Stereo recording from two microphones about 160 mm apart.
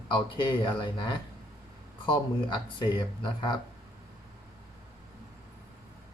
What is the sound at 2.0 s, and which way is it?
Speech, 30° left (ahead or behind).